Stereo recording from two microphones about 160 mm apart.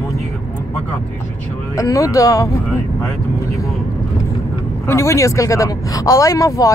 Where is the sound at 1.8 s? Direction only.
20° left (ahead or behind).